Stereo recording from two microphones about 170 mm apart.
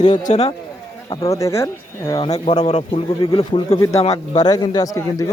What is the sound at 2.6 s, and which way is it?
Speech, 40° left (ahead or behind).